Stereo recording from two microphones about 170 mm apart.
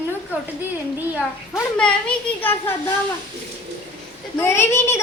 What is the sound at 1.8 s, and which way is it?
Speech, 5° left (ahead or behind).